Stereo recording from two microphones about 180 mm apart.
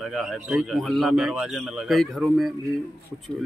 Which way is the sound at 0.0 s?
Centre (ahead or behind).